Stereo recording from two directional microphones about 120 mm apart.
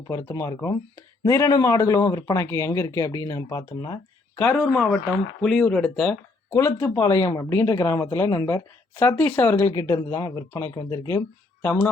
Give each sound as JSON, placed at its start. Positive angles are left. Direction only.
{"t": 0.1, "sound": "speech", "side_deg": 25}
{"t": 4.7, "sound": "speech", "side_deg": 5}
{"t": 6.6, "sound": "speech", "side_deg": 25}
{"t": 9.7, "sound": "speech", "side_deg": 30}